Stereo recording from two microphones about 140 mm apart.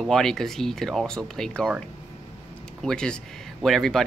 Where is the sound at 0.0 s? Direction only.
Centre (ahead or behind).